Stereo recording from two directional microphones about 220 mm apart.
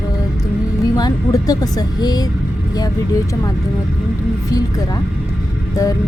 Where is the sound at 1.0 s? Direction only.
20° left (ahead or behind).